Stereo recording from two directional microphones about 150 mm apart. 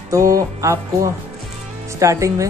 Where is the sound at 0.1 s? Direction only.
20° right (ahead or behind).